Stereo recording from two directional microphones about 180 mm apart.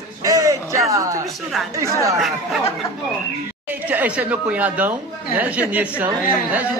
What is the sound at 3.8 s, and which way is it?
A man's voice, 10° right (ahead or behind).